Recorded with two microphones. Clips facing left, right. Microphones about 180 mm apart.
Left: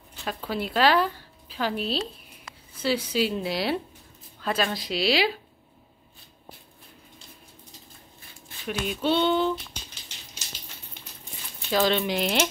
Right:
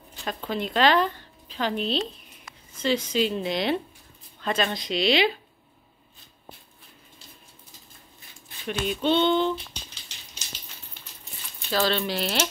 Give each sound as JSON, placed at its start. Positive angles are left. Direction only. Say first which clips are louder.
{"t": 0.2, "sound": "a woman's voice", "louder": "right 1 dB", "side_deg": 5}
{"t": 8.6, "sound": "speech", "louder": "right 1 dB", "side_deg": 5}
{"t": 11.7, "sound": "speech", "louder": "left 2 dB", "side_deg": 15}